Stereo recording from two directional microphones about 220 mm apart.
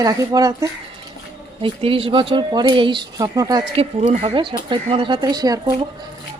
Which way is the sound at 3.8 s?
25° right (ahead or behind).